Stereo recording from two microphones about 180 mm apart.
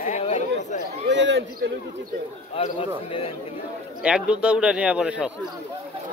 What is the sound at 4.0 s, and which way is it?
A man's voice, 5° right (ahead or behind).